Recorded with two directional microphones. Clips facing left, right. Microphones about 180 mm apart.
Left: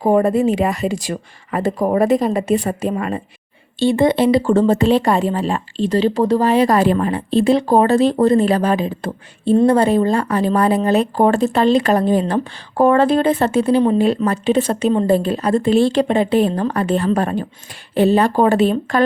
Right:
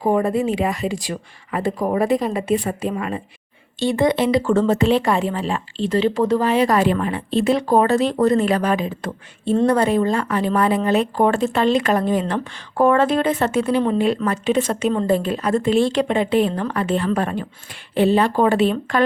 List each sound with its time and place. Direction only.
0.0 s speech: 45° left (ahead or behind)
3.8 s speech: 30° left (ahead or behind)